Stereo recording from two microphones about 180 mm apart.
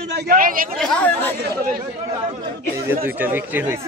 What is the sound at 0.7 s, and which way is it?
Speech, 5° left (ahead or behind).